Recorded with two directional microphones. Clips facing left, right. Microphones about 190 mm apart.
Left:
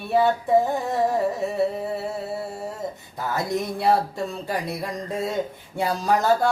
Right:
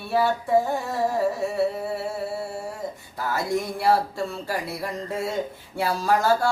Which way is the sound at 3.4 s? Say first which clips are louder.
Left 1 dB; 20° left (ahead or behind).